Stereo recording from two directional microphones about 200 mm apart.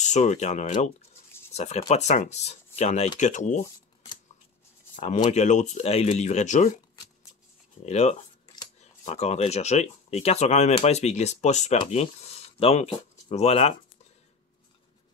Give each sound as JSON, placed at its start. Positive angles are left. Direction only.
{"t": 0.0, "sound": "speech", "side_deg": 35}
{"t": 5.3, "sound": "speech", "side_deg": 35}
{"t": 7.8, "sound": "speech", "side_deg": 35}